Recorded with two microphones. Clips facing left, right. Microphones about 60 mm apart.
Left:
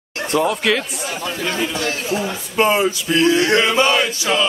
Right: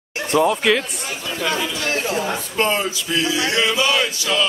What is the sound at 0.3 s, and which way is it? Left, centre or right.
Speech, centre.